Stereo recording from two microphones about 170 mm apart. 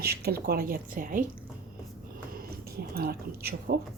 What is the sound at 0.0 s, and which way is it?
A woman's voice, 70° right (ahead or behind).